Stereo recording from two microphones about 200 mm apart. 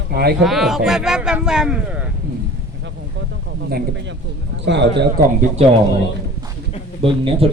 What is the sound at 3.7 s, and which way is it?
Speech, 60° right (ahead or behind).